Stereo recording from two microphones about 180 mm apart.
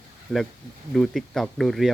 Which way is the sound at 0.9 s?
Centre (ahead or behind).